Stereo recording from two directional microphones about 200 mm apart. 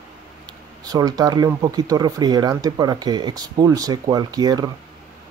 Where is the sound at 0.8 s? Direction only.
20° right (ahead or behind).